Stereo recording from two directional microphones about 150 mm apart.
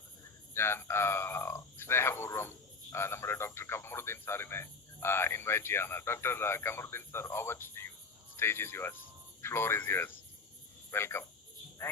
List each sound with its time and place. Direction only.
0.5 s speech: 15° left (ahead or behind)